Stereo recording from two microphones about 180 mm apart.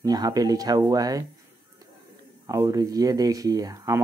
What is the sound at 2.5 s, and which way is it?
Speech, 20° right (ahead or behind).